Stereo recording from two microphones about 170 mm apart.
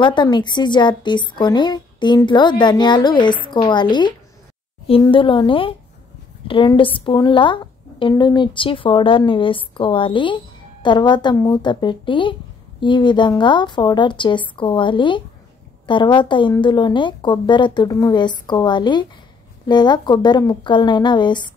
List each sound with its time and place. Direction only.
0.0 s a woman's voice: 25° left (ahead or behind)